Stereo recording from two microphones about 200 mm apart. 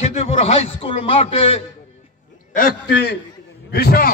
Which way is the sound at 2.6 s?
50° left (ahead or behind).